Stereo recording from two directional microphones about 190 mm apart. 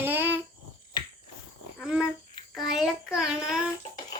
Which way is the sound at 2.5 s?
Centre (ahead or behind).